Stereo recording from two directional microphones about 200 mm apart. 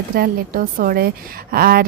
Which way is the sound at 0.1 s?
45° right (ahead or behind).